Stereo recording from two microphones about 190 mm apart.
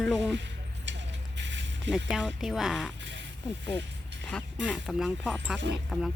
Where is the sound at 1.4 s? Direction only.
70° right (ahead or behind).